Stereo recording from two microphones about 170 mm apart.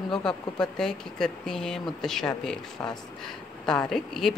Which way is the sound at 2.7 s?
25° left (ahead or behind).